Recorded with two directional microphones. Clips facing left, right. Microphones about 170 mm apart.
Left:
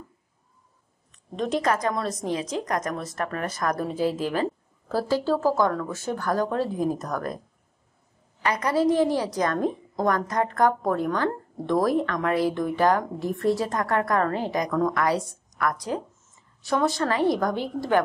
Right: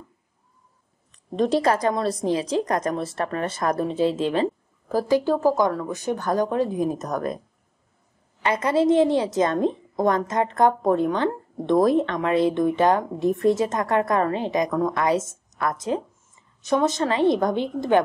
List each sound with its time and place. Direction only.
1.3 s speech: 35° right (ahead or behind)
8.4 s speech: 25° right (ahead or behind)